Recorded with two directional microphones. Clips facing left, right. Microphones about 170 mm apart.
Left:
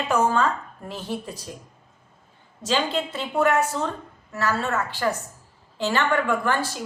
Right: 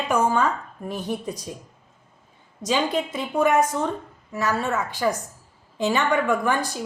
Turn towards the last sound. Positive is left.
turn(degrees=-15)  # may be behind; listen again after turning